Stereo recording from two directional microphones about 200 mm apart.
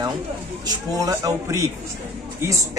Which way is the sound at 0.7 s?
15° right (ahead or behind).